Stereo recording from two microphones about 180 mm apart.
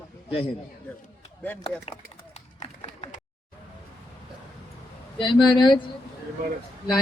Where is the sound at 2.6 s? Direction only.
35° left (ahead or behind).